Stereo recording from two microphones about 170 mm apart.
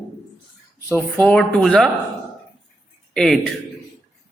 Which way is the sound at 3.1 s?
5° left (ahead or behind).